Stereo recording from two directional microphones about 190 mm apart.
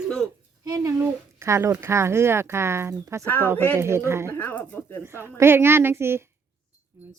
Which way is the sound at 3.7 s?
15° right (ahead or behind).